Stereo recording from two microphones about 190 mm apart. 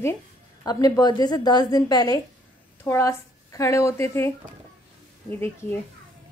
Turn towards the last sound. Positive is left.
turn(degrees=10)  # may be behind; listen again after turning